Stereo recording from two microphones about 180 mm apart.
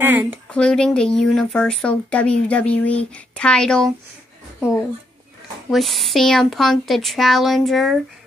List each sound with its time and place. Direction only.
0.0 s speech: 10° right (ahead or behind)
0.5 s speech: 5° left (ahead or behind)
5.7 s speech: centre (ahead or behind)